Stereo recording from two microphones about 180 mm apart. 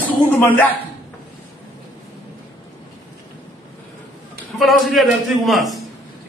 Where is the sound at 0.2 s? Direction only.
10° left (ahead or behind).